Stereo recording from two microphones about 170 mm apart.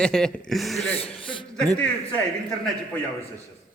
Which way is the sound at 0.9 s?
35° left (ahead or behind).